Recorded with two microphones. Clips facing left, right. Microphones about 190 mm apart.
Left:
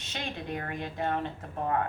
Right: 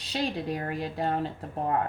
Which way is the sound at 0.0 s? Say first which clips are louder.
Right 7 dB; 35° right (ahead or behind).